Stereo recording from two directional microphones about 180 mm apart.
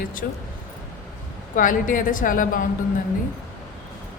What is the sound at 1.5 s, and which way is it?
Speech, 45° left (ahead or behind).